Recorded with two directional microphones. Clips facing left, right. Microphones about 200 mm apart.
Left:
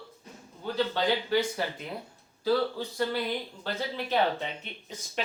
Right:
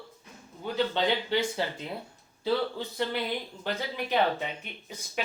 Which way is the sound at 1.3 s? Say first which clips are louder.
Left 3 dB; 25° right (ahead or behind).